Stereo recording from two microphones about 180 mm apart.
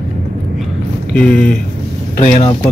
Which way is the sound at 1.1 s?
5° left (ahead or behind).